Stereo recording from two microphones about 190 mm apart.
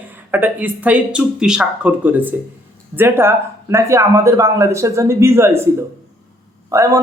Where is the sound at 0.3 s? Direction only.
10° right (ahead or behind).